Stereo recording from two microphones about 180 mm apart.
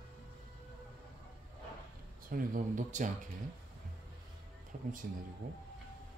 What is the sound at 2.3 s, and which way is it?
Speech, 50° right (ahead or behind).